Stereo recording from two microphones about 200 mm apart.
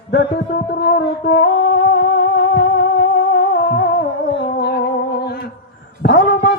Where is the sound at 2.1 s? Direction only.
55° left (ahead or behind).